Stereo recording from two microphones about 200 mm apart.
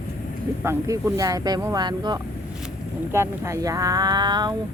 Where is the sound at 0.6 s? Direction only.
15° right (ahead or behind).